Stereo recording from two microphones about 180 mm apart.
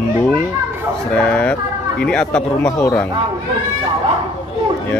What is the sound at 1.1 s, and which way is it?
Speech, 5° left (ahead or behind).